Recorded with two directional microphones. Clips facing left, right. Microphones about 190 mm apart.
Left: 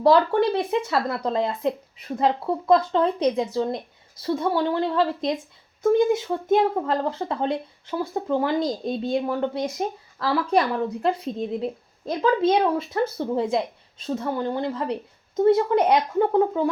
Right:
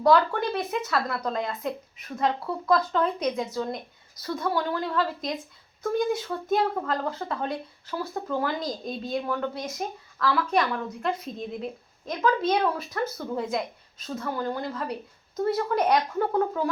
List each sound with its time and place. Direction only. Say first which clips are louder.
0.0 s speech: left 4 dB; 30° left (ahead or behind)